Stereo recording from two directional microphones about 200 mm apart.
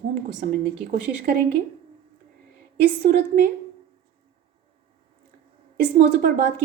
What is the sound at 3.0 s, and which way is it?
Speech, 45° right (ahead or behind).